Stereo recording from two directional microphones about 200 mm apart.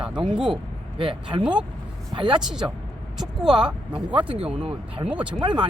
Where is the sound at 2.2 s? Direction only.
25° right (ahead or behind).